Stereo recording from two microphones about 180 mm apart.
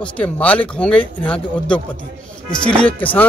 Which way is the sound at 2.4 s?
5° left (ahead or behind).